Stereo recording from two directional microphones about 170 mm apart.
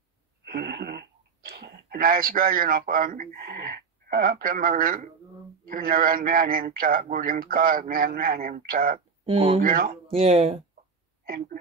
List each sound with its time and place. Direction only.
0.5 s a man's voice: 70° right (ahead or behind)
9.2 s speech: 35° right (ahead or behind)
9.6 s a man's voice: 55° right (ahead or behind)
10.0 s speech: 35° right (ahead or behind)
11.2 s speech: 60° right (ahead or behind)